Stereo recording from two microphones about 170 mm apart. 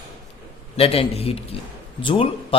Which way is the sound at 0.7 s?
35° left (ahead or behind).